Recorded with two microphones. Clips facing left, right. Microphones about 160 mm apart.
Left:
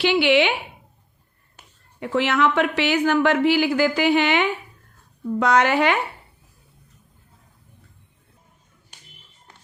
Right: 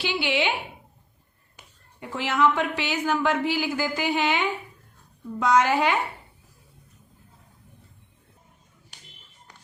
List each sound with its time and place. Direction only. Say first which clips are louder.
0.0 s a woman's voice: left 8 dB; 75° left (ahead or behind)
2.0 s a woman's voice: left 4 dB; 75° left (ahead or behind)